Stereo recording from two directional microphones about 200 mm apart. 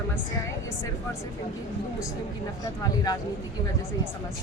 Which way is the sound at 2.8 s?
20° left (ahead or behind).